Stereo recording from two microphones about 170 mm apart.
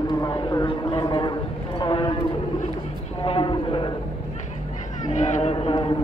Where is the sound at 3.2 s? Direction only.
30° left (ahead or behind).